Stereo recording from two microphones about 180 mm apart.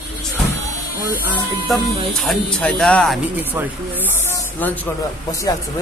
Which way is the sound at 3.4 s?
10° right (ahead or behind).